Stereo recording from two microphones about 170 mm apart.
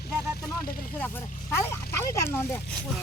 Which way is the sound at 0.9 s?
10° left (ahead or behind).